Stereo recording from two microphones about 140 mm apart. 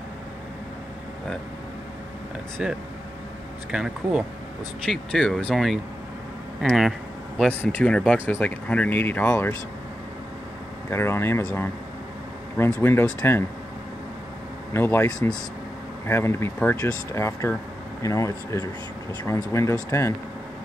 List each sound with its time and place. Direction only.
2.6 s speech: 5° right (ahead or behind); by 9.6 s 15° left (ahead or behind)
10.9 s speech: 20° left (ahead or behind)
12.8 s speech: 15° left (ahead or behind)
14.7 s speech: 15° left (ahead or behind)